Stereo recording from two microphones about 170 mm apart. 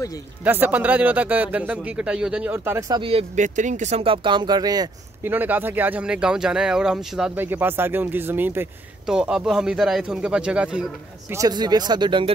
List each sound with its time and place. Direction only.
0.4 s speech: 10° right (ahead or behind)
2.9 s speech: 30° right (ahead or behind)
3.3 s speech: 45° right (ahead or behind); by 4.8 s 25° right (ahead or behind)
5.2 s speech: 10° right (ahead or behind)
11.3 s speech: 25° right (ahead or behind)